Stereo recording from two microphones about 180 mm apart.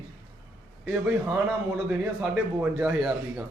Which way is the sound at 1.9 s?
10° right (ahead or behind).